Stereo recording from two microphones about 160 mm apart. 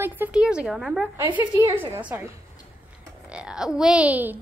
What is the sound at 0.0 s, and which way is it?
A woman's voice, 10° right (ahead or behind).